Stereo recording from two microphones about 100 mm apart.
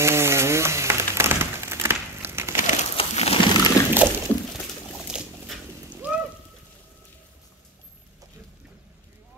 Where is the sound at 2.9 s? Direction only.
85° left.